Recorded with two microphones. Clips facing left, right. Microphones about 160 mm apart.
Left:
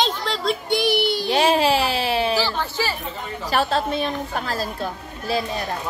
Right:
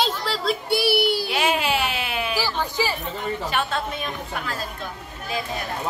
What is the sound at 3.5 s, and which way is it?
Speech, 35° left (ahead or behind).